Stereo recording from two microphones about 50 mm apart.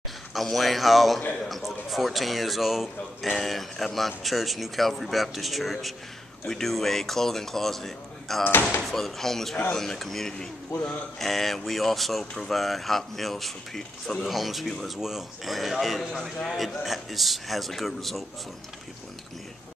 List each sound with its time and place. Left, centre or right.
0.3 s speech: centre